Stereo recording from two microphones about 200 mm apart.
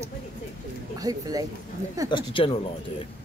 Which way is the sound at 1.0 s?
20° right (ahead or behind).